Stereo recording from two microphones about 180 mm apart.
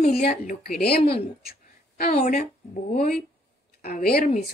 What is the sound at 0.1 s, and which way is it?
Speech, 55° left (ahead or behind).